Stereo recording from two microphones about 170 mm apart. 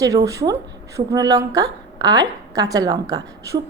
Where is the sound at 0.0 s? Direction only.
20° right (ahead or behind).